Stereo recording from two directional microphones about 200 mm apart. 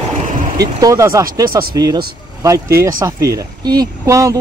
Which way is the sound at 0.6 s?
15° right (ahead or behind).